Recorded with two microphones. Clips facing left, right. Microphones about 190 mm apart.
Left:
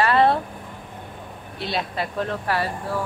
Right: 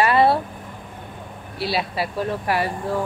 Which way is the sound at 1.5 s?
5° right (ahead or behind).